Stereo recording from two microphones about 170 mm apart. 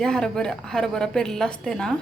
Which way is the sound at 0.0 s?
5° left (ahead or behind).